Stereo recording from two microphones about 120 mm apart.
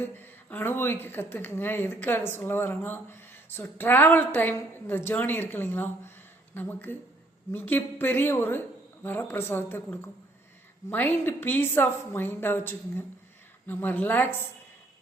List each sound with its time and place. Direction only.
0.0 s a woman's voice: 15° left (ahead or behind)